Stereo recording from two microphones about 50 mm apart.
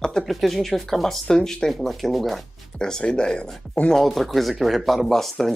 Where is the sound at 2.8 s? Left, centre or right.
Centre.